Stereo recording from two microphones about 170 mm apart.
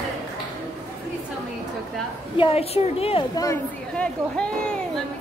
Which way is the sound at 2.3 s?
35° left (ahead or behind).